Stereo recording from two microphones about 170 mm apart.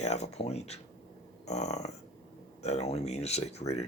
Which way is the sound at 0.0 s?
40° left (ahead or behind).